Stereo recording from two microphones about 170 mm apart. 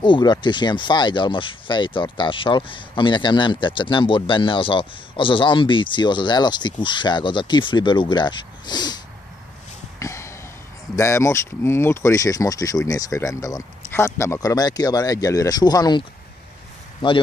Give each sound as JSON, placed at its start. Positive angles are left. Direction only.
{"t": 0.0, "sound": "speech", "side_deg": 25}
{"t": 9.9, "sound": "a sound", "side_deg": 15}
{"t": 11.0, "sound": "speech", "side_deg": 15}